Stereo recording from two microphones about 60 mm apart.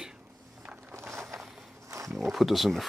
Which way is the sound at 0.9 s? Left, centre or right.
Right.